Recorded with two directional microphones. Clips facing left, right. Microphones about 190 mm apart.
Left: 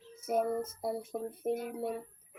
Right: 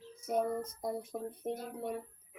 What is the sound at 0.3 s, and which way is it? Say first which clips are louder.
Speech: left 2 dB; 5° left (ahead or behind).